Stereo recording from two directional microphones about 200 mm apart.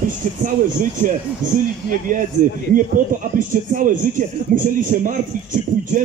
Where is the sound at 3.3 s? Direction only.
40° right (ahead or behind).